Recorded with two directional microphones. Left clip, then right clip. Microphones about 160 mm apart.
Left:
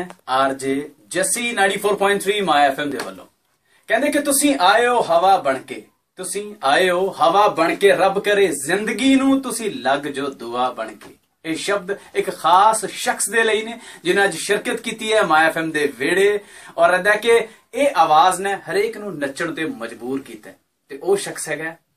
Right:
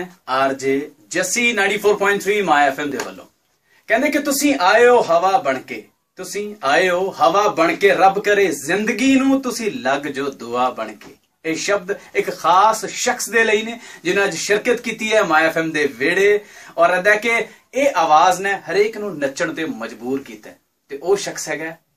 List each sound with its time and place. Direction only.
0.3 s speech: centre (ahead or behind)
21.1 s speech: centre (ahead or behind)